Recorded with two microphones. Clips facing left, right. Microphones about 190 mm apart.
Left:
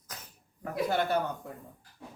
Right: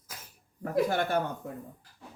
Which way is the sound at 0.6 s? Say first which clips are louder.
Right 2 dB; 50° right (ahead or behind).